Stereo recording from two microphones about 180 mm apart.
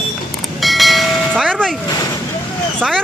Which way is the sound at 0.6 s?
Centre (ahead or behind).